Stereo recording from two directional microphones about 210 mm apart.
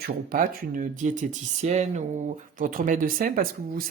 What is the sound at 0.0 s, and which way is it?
Speech, 40° right (ahead or behind).